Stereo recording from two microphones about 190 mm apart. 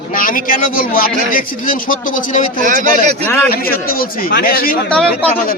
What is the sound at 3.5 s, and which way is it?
A man's voice, 50° left (ahead or behind).